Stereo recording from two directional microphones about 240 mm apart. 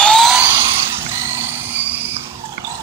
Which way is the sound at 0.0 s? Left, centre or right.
Centre.